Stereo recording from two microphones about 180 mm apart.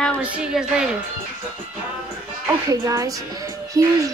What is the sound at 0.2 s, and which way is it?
Speech, 5° right (ahead or behind).